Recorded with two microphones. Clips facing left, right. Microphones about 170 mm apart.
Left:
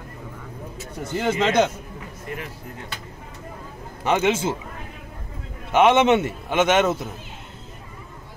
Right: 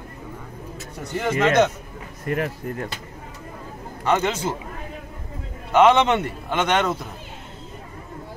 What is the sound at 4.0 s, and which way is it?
Speech, 15° left (ahead or behind).